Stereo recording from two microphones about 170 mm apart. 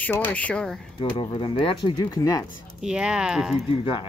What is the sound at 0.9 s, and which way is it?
Speech, 30° left (ahead or behind).